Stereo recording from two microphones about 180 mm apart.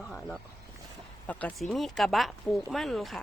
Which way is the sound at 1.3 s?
10° left (ahead or behind).